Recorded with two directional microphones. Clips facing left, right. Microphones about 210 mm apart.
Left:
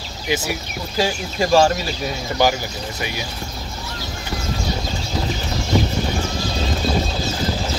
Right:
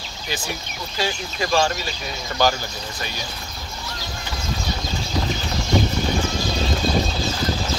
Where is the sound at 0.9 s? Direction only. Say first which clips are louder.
Left 5 dB; 40° left (ahead or behind).